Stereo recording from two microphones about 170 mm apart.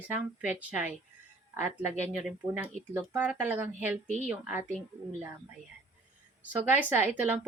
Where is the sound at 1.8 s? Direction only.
45° left (ahead or behind).